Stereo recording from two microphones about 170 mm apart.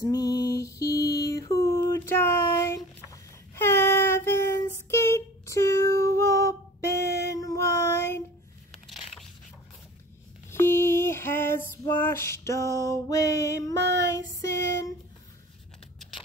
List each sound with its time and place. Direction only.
0.0 s music: 20° left (ahead or behind)
0.7 s mantra: 20° left (ahead or behind)
1.5 s a sound: 20° left (ahead or behind)
10.5 s busy signal: 15° left (ahead or behind)
12.0 s a sound: 15° left (ahead or behind)
14.1 s child singing: 20° left (ahead or behind)